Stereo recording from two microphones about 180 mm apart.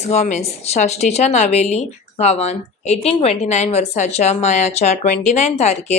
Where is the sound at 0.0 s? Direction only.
35° left (ahead or behind).